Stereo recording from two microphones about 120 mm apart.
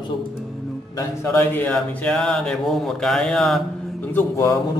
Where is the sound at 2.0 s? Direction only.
5° left (ahead or behind).